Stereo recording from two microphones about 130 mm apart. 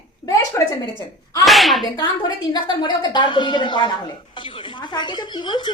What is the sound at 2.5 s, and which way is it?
Speech, 35° left (ahead or behind).